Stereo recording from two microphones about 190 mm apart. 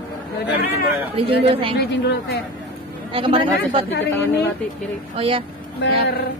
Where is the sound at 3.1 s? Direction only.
30° right (ahead or behind).